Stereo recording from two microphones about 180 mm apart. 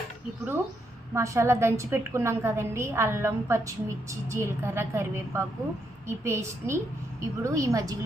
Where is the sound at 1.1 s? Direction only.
15° right (ahead or behind).